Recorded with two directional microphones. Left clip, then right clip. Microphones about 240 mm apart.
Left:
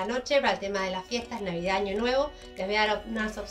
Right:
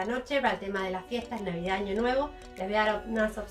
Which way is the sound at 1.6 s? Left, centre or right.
Centre.